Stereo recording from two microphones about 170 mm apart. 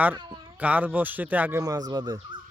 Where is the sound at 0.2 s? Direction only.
25° right (ahead or behind).